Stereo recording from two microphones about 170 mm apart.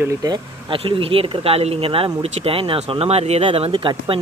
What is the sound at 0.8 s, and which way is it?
Speech, 35° right (ahead or behind).